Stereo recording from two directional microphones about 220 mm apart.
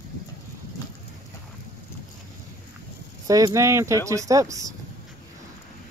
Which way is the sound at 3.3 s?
15° right (ahead or behind).